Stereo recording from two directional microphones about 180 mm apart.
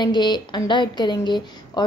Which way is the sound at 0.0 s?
25° left (ahead or behind).